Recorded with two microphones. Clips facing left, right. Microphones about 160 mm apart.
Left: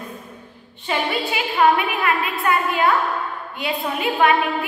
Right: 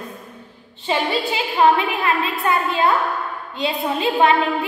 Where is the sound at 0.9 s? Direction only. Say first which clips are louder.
Right 2 dB; 25° right (ahead or behind).